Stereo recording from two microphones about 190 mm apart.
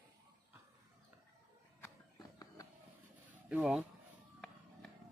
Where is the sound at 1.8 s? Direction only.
15° left (ahead or behind).